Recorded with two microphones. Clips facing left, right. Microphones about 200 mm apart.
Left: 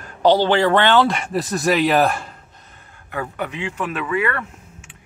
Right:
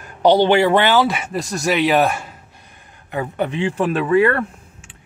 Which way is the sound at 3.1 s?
25° right (ahead or behind).